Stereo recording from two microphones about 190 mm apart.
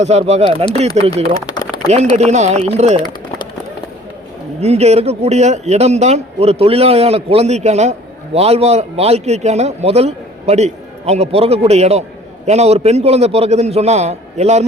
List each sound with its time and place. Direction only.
0.0 s speech: 35° right (ahead or behind)
1.3 s a sound: 20° left (ahead or behind)
1.9 s speech: 35° right (ahead or behind)
4.6 s speech: 35° right (ahead or behind)